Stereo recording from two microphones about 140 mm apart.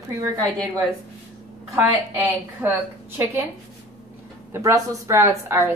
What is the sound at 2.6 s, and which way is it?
Speech, 15° right (ahead or behind).